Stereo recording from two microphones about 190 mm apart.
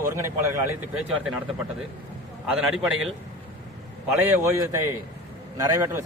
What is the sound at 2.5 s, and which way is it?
Speech, 5° right (ahead or behind).